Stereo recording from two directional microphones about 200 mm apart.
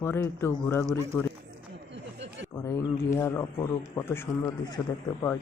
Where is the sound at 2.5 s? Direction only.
15° left (ahead or behind).